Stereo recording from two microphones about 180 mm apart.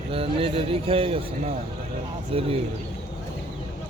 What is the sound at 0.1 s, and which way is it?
Speech, 30° right (ahead or behind).